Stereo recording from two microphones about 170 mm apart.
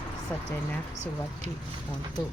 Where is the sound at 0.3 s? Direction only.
10° left (ahead or behind).